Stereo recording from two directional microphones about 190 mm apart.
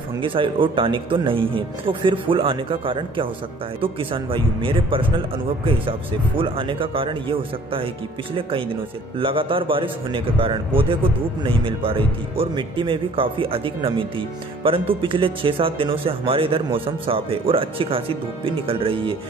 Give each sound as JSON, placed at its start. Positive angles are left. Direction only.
{"t": 0.2, "sound": "speech", "side_deg": -25}